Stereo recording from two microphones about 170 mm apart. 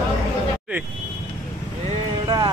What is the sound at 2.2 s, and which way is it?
Music, 25° right (ahead or behind).